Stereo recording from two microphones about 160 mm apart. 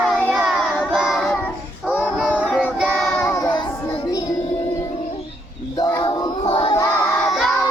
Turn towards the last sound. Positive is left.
turn(degrees=0)  # may be behind; listen again after turning